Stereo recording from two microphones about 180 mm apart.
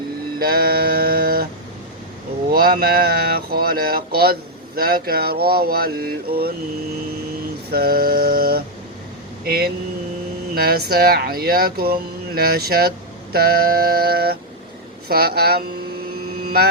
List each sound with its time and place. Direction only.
0.3 s a sound: 55° right (ahead or behind)
2.5 s speech: 55° right (ahead or behind)
7.7 s speech: 60° right (ahead or behind)